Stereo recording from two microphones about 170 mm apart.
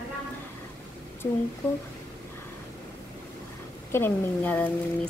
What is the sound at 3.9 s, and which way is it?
Speech, 10° left (ahead or behind).